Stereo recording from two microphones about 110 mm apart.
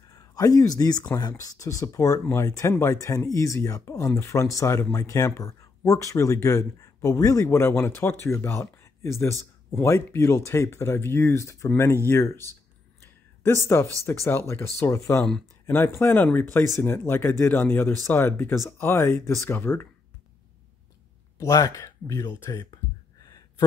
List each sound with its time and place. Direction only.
0.3 s speech: 30° left (ahead or behind)
13.0 s a sound: 20° left (ahead or behind)
14.0 s speech: 25° left (ahead or behind)
21.4 s speech: 30° left (ahead or behind)